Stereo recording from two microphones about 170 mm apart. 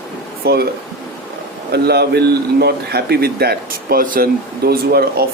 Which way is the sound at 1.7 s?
70° right (ahead or behind).